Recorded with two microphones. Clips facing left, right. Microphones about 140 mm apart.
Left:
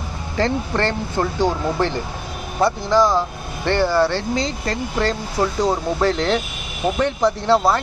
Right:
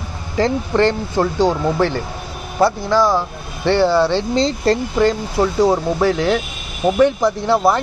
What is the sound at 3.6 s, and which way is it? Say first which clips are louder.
Speech: right 3 dB; 15° right (ahead or behind).